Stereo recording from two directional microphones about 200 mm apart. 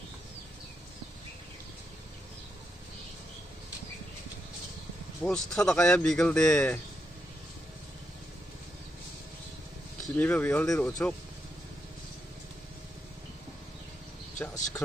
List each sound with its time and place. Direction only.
5.2 s speech: 5° left (ahead or behind)
10.0 s speech: 10° left (ahead or behind)
14.4 s speech: 10° left (ahead or behind)